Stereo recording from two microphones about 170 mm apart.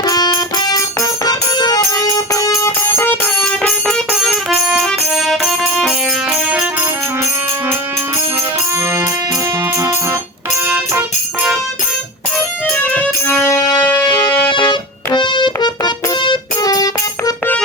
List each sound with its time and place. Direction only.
0.0 s music: 20° left (ahead or behind); by 5.9 s centre (ahead or behind)
12.7 s music: 10° left (ahead or behind)
14.5 s music: 25° left (ahead or behind)